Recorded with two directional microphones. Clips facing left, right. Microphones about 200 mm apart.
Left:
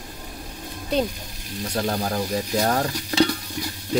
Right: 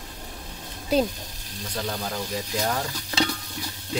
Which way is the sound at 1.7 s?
45° left (ahead or behind).